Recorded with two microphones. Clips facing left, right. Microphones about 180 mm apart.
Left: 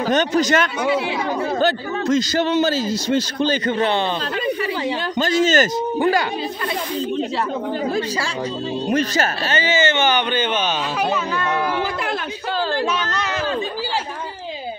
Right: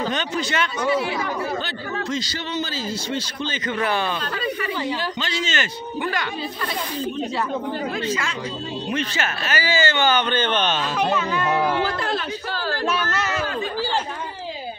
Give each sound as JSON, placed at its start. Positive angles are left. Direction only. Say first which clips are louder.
{"t": 0.1, "sound": "a man's voice", "louder": "left 8 dB", "side_deg": 45}
{"t": 5.2, "sound": "speech", "louder": "left 10 dB", "side_deg": 45}
{"t": 8.8, "sound": "speech", "louder": "left 6 dB", "side_deg": 40}
{"t": 9.5, "sound": "speech", "louder": "left 1 dB", "side_deg": 20}